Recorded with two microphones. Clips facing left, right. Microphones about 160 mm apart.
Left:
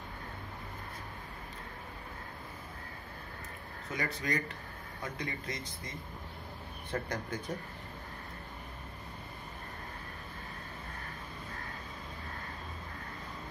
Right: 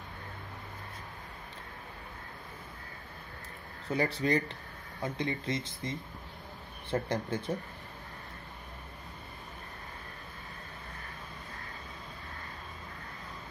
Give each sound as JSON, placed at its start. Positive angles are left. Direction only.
{"t": 3.9, "sound": "speech", "side_deg": -30}